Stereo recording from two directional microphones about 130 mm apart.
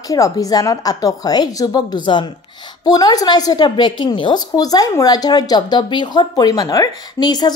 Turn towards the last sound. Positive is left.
turn(degrees=30)  # may be behind; listen again after turning